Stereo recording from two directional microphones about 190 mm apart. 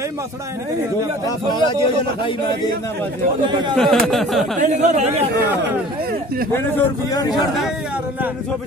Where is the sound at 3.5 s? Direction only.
25° right (ahead or behind).